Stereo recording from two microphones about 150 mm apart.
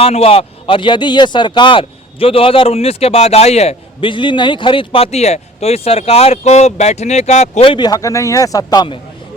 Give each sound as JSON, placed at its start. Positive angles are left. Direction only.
{"t": 0.0, "sound": "speech", "side_deg": 40}